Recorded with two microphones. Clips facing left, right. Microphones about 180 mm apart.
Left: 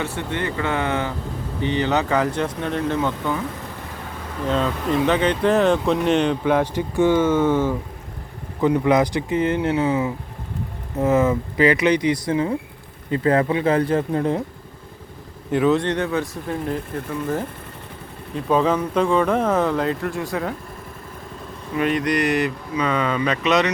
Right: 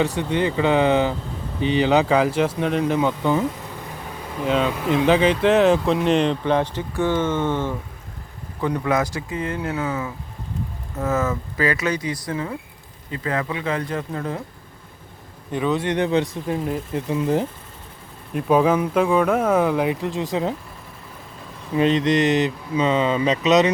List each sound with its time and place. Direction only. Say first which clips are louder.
0.0 s speech: right 5 dB; 15° right (ahead or behind)
4.4 s speech: right 1 dB; 5° right (ahead or behind)
5.2 s speech: right 2 dB; 90° right
5.5 s speech: right 1 dB; centre (ahead or behind); by 12.5 s 20° left (ahead or behind)
13.1 s speech: left 7 dB; 35° left (ahead or behind)
15.6 s speech: left 4 dB; centre (ahead or behind)
15.9 s speech: right 2 dB; 20° right (ahead or behind)
21.8 s speech: right 3 dB; 25° right (ahead or behind)